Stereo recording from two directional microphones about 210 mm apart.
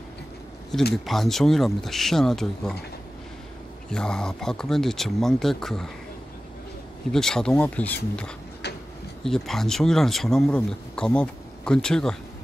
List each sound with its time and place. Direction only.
0.9 s speech: centre (ahead or behind)
3.9 s speech: 5° left (ahead or behind)
7.1 s speech: 5° left (ahead or behind)
8.6 s a sound: 50° left (ahead or behind)
9.2 s speech: centre (ahead or behind)